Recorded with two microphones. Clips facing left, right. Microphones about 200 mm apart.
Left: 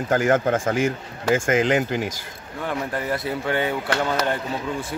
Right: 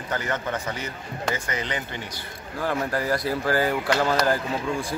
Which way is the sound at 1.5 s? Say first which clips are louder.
Left 11 dB; 90° left.